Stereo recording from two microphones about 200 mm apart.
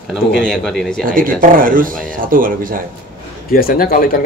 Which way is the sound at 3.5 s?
45° left (ahead or behind).